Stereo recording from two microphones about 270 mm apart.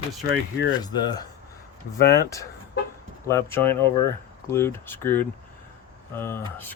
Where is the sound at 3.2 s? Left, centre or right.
Centre.